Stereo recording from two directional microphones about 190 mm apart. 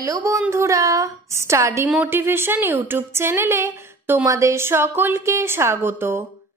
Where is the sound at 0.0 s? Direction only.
15° right (ahead or behind).